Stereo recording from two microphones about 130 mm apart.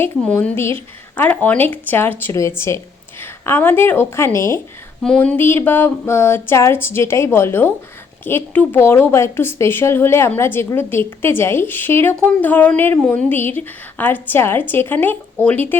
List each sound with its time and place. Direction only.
0.0 s a woman's voice: 15° left (ahead or behind)
5.0 s a woman's voice: 10° left (ahead or behind)